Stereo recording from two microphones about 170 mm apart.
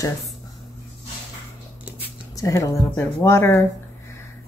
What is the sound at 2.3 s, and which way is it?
Speech, 20° left (ahead or behind).